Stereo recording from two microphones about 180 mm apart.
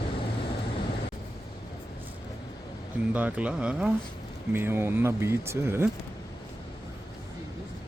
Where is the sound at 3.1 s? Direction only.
10° right (ahead or behind).